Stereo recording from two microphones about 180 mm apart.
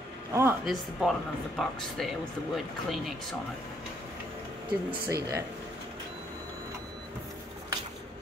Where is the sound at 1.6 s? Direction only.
Centre (ahead or behind).